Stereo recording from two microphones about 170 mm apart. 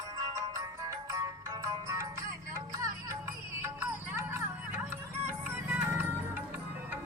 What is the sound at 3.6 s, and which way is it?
Music, 15° right (ahead or behind).